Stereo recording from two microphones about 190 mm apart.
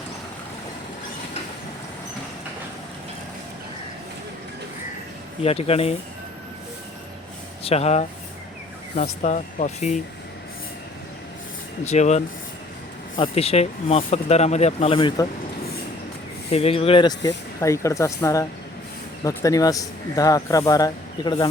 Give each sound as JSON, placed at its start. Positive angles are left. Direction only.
{"t": 5.4, "sound": "speech", "side_deg": 30}
{"t": 7.6, "sound": "speech", "side_deg": 35}
{"t": 11.9, "sound": "speech", "side_deg": 35}
{"t": 16.5, "sound": "speech", "side_deg": 30}